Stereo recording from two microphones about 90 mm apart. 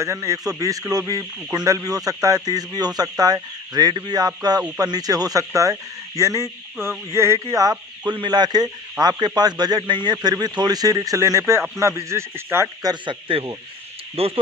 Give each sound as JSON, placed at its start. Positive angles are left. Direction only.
{"t": 0.0, "sound": "speech", "side_deg": -35}
{"t": 8.1, "sound": "speech", "side_deg": -55}
{"t": 13.0, "sound": "speech", "side_deg": -75}
{"t": 14.1, "sound": "speech", "side_deg": -90}